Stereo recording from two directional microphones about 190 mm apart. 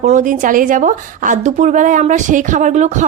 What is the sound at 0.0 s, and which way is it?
A woman's voice, 40° right (ahead or behind).